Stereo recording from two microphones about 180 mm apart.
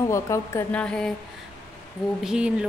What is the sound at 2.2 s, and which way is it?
Speech, 5° right (ahead or behind).